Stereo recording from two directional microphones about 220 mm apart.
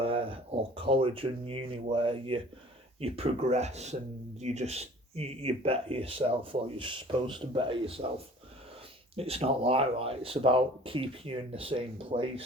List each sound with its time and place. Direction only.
0.0 s speech: 25° right (ahead or behind)
9.1 s speech: 25° right (ahead or behind)